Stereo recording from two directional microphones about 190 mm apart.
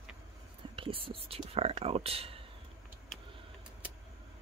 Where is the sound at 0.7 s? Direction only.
30° right (ahead or behind).